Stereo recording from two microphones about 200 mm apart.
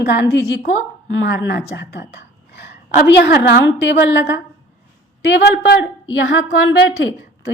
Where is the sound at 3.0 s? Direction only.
55° left (ahead or behind).